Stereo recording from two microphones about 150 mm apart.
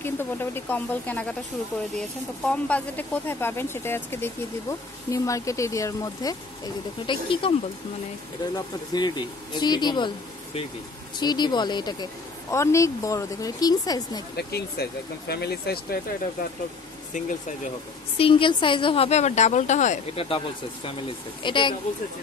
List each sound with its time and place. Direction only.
0.0 s speech: 15° left (ahead or behind); by 7.5 s 35° left (ahead or behind)
8.5 s a woman's voice: 30° left (ahead or behind)
14.3 s speech: 90° left
18.1 s a woman's voice: 35° left (ahead or behind)
20.2 s a woman's voice: 35° left (ahead or behind)